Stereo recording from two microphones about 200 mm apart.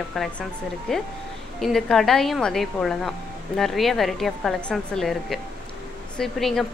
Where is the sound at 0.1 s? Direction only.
Centre (ahead or behind).